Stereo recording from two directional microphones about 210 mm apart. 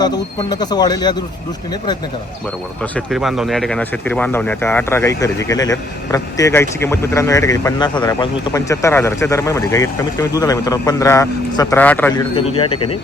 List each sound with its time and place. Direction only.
0.0 s speech: 20° left (ahead or behind)
2.9 s speech: centre (ahead or behind)
12.5 s speech: 25° left (ahead or behind)